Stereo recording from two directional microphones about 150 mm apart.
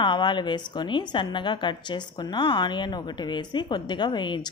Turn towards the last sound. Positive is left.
turn(degrees=30)  # may be behind; listen again after turning